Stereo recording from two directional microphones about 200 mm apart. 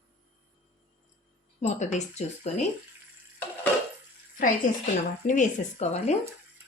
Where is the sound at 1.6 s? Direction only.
35° left (ahead or behind).